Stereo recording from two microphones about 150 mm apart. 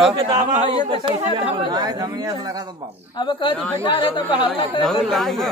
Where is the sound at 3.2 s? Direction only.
35° left (ahead or behind).